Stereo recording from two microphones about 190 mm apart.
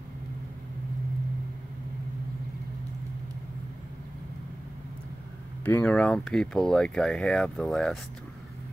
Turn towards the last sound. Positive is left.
turn(degrees=5)  # may be behind; listen again after turning